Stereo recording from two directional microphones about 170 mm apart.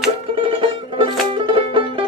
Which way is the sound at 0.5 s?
30° right (ahead or behind).